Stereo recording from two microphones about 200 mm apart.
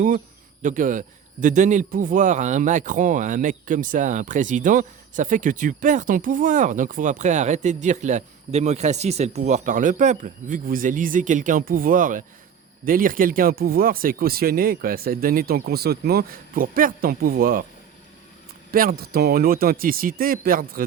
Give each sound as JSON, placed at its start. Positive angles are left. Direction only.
{"t": 0.6, "sound": "a man's voice", "side_deg": -40}
{"t": 18.7, "sound": "speech", "side_deg": -45}